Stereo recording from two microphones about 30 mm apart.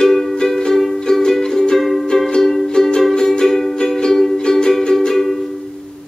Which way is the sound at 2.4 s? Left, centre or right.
Centre.